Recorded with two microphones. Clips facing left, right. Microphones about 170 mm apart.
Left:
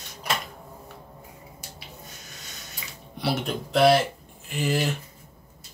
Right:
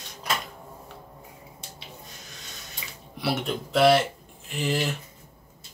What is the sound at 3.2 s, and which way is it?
Speech, centre (ahead or behind).